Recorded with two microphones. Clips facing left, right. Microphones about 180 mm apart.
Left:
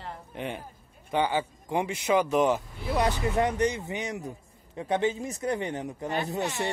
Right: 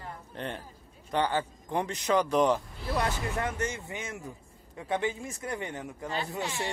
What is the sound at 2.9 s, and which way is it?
Speech, 20° left (ahead or behind).